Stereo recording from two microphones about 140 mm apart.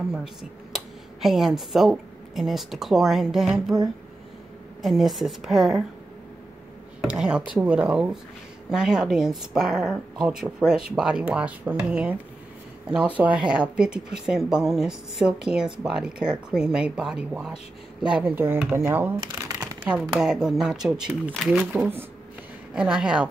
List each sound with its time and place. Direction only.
0.1 s speech: 5° right (ahead or behind)
4.8 s speech: centre (ahead or behind)
7.0 s speech: 5° right (ahead or behind)
19.1 s shuffling cards: 30° right (ahead or behind)
19.9 s speech: centre (ahead or behind)
21.7 s speech: 15° right (ahead or behind)